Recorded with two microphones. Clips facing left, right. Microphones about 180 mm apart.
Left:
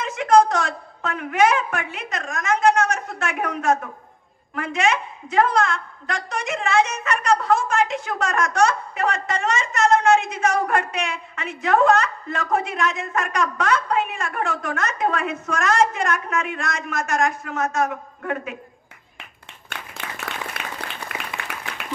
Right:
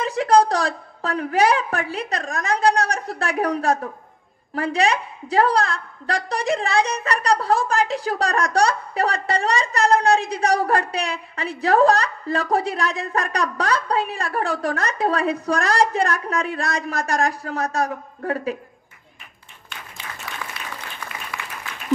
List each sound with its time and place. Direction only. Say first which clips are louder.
0.0 s a woman's voice: even; 35° right (ahead or behind)
19.7 s applause: left 3 dB; 60° left (ahead or behind)
21.3 s applause: even; 20° left (ahead or behind)